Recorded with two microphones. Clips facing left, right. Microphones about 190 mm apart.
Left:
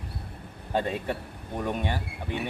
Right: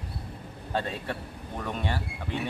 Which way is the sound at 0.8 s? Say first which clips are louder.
Left 3 dB; 15° left (ahead or behind).